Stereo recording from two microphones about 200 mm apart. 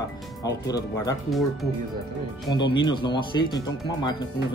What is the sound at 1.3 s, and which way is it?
Speech, centre (ahead or behind).